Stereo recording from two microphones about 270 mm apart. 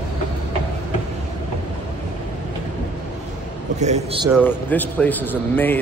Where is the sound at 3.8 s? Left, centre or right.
Right.